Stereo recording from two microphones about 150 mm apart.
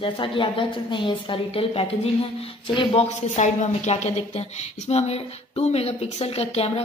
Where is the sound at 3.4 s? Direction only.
50° left (ahead or behind).